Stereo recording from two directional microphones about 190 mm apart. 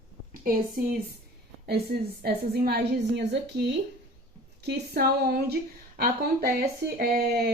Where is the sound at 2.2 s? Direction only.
55° right (ahead or behind).